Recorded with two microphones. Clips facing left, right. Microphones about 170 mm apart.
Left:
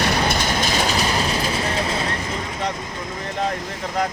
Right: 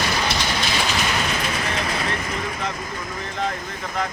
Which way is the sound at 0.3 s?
45° left (ahead or behind).